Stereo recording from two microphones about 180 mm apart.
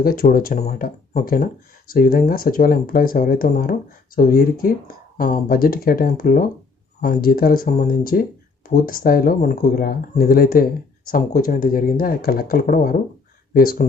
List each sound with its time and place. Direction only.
0.0 s speech: 55° left (ahead or behind)